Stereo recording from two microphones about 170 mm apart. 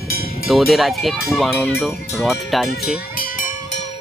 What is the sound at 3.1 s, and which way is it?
Cowbell, 55° left (ahead or behind).